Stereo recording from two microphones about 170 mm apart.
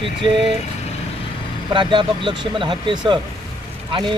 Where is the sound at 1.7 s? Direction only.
30° right (ahead or behind).